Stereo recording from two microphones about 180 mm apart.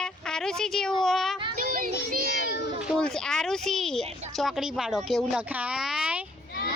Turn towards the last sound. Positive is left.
turn(degrees=-5)  # may be behind; listen again after turning